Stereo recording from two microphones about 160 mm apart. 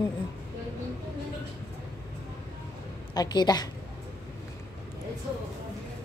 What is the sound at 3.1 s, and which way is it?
Speech, 25° left (ahead or behind).